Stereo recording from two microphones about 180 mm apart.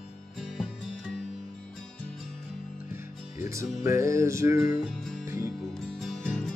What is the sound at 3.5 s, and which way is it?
Music, 15° right (ahead or behind).